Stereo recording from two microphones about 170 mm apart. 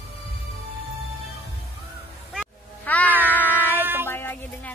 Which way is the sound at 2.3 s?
10° left (ahead or behind).